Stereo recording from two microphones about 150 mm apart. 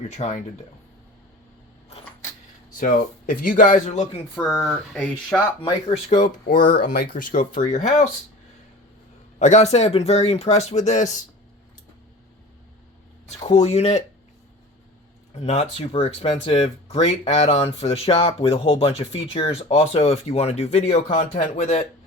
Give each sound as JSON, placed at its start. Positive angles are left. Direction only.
{"t": 0.1, "sound": "speech", "side_deg": 50}
{"t": 2.7, "sound": "speech", "side_deg": 65}
{"t": 4.5, "sound": "speech", "side_deg": 0}
{"t": 5.5, "sound": "speech", "side_deg": 40}
{"t": 6.1, "sound": "speech", "side_deg": 60}
{"t": 9.4, "sound": "speech", "side_deg": 50}
{"t": 13.2, "sound": "speech", "side_deg": 45}
{"t": 15.4, "sound": "speech", "side_deg": 50}